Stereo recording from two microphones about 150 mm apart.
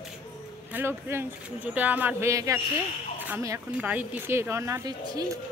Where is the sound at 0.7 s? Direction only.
15° right (ahead or behind).